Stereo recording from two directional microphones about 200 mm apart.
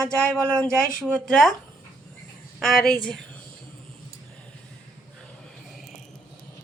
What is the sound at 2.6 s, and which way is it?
Speech, centre (ahead or behind).